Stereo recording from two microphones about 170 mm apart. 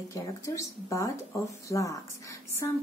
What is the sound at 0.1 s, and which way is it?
Speech, 20° left (ahead or behind).